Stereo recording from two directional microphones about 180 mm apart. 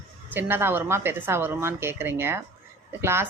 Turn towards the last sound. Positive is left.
turn(degrees=-15)  # may be behind; listen again after turning